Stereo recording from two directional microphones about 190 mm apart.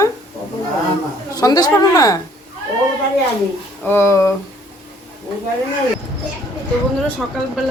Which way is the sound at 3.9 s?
15° left (ahead or behind).